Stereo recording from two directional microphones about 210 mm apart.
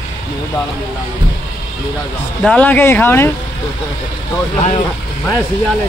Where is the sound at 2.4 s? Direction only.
5° left (ahead or behind).